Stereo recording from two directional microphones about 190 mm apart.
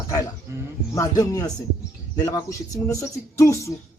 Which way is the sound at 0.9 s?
20° left (ahead or behind).